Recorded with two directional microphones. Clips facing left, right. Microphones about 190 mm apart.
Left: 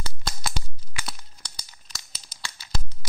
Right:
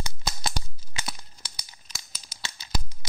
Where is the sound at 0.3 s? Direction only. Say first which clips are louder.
Left 1 dB; 25° right (ahead or behind).